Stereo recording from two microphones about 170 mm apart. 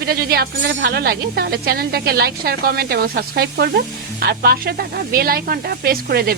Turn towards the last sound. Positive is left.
turn(degrees=-60)  # may be behind; listen again after turning